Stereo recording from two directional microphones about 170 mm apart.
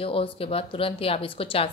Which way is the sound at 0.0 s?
35° left (ahead or behind).